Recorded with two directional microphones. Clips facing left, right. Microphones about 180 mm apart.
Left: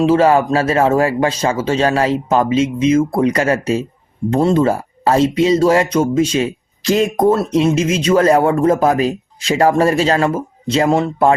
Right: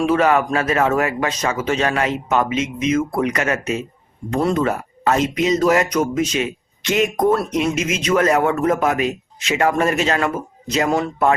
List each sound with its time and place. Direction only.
0.0 s speech: 30° left (ahead or behind)